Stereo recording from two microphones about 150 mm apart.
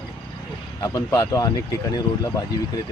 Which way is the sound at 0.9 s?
20° left (ahead or behind).